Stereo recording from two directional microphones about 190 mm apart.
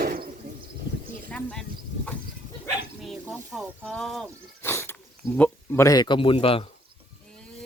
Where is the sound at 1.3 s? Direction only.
5° left (ahead or behind).